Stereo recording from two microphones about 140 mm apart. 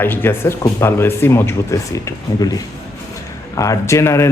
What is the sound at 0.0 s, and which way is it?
Speech, 15° left (ahead or behind).